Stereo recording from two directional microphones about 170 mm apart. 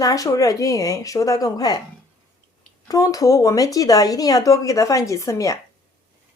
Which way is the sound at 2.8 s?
20° left (ahead or behind).